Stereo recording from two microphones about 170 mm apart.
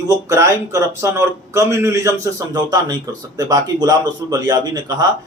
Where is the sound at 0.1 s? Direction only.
20° right (ahead or behind).